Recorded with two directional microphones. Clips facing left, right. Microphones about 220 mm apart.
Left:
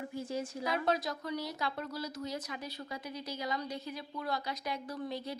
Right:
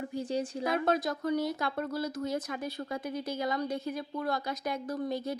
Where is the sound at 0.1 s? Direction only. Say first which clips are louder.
Right 6 dB; 30° right (ahead or behind).